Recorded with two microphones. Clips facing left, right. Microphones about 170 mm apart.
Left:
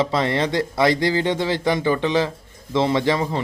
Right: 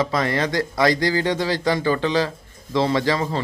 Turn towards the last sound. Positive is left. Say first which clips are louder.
# left 1 dB
turn(degrees=20)  # may be behind; listen again after turning